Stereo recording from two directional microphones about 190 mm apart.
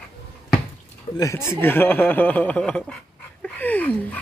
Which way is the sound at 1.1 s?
15° left (ahead or behind).